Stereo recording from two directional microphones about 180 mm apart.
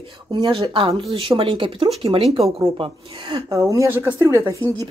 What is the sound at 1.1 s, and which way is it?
Speech, 30° right (ahead or behind).